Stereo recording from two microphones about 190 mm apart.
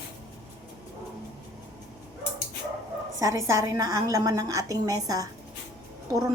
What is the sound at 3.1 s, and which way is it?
A woman's voice, 15° right (ahead or behind).